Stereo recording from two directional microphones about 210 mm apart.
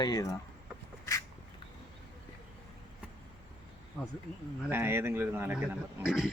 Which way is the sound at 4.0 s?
10° left (ahead or behind).